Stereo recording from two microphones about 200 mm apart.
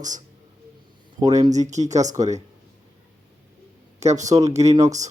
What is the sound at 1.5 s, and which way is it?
Speech, 35° right (ahead or behind).